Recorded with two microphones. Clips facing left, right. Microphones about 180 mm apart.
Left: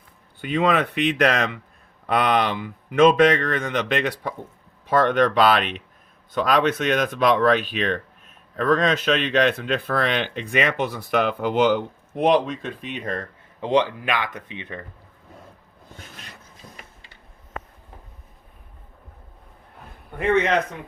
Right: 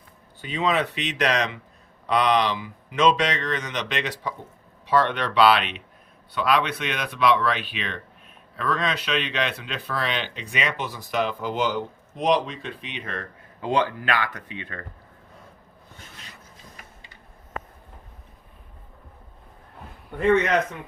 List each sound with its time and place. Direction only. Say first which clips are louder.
0.4 s speech: left 4 dB; 55° left (ahead or behind)
13.6 s speech: left 3 dB; 20° left (ahead or behind)